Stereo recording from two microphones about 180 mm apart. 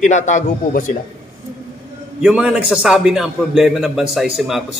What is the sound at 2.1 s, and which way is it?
A man's voice, 5° right (ahead or behind).